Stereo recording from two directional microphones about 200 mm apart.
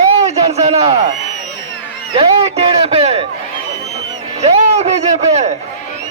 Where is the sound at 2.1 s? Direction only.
30° right (ahead or behind).